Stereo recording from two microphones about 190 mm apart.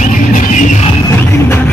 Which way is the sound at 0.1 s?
45° left (ahead or behind).